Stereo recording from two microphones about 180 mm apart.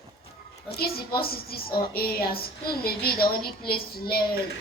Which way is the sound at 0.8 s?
60° left (ahead or behind).